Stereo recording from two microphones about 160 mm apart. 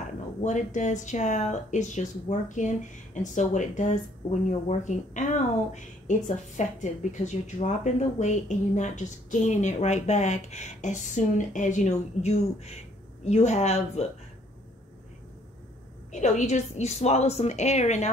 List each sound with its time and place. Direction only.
0.4 s speech: 50° left (ahead or behind)
16.1 s speech: 50° left (ahead or behind)